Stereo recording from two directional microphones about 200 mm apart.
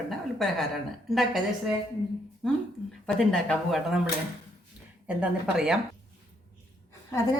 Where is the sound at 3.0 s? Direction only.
5° left (ahead or behind).